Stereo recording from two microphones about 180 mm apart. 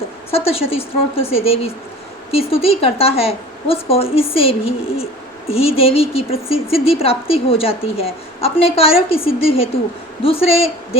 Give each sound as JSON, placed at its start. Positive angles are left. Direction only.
{"t": 0.3, "sound": "a woman's voice", "side_deg": 30}